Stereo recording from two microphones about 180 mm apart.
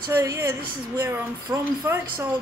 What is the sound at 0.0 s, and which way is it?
Speech, 20° right (ahead or behind).